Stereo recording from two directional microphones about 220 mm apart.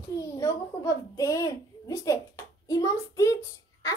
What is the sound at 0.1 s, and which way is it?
A child's voice, 15° left (ahead or behind).